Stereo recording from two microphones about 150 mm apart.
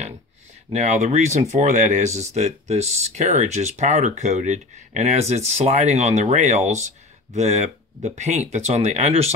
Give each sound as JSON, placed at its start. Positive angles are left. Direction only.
{"t": 0.7, "sound": "speech", "side_deg": -55}